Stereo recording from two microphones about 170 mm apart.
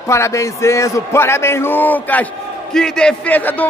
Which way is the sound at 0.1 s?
15° left (ahead or behind).